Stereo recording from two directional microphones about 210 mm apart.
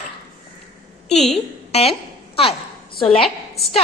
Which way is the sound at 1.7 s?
30° left (ahead or behind).